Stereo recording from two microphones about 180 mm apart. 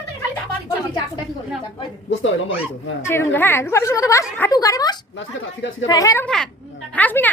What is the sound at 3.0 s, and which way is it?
A woman's voice, 15° left (ahead or behind).